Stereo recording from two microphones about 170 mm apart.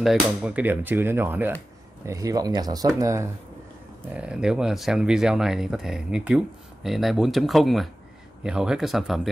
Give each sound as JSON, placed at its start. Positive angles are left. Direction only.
{"t": 0.0, "sound": "speech", "side_deg": -5}
{"t": 4.1, "sound": "speech", "side_deg": -5}